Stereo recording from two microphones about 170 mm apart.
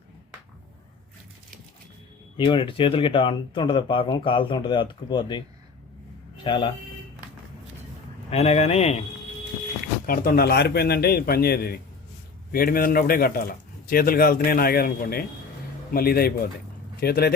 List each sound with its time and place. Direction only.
2.4 s speech: 30° left (ahead or behind)
8.3 s speech: 40° left (ahead or behind)
10.1 s a man's voice: 60° left (ahead or behind)